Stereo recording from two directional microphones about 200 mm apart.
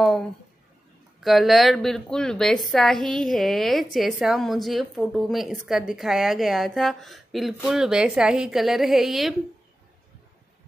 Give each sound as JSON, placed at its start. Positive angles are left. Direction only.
{"t": 1.2, "sound": "a woman's voice", "side_deg": 0}